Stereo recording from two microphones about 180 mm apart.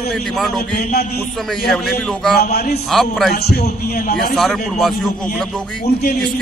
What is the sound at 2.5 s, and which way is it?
Speech, 60° left (ahead or behind).